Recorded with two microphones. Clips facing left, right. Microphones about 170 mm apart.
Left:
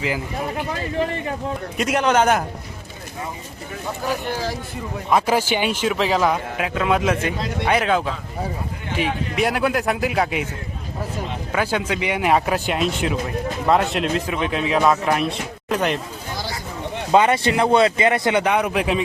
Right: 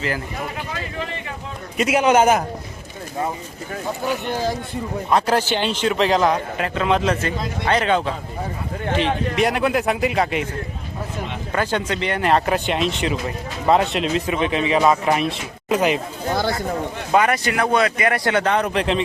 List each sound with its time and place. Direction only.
1.7 s speech: 5° right (ahead or behind)
5.1 s speech: 10° left (ahead or behind)
9.3 s speech: centre (ahead or behind)
11.5 s speech: 10° left (ahead or behind)
16.3 s speech: 55° right (ahead or behind)
17.1 s speech: 25° left (ahead or behind); by 19.0 s 5° left (ahead or behind)